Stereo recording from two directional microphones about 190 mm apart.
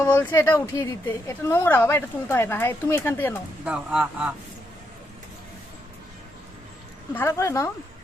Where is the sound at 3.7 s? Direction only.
5° right (ahead or behind).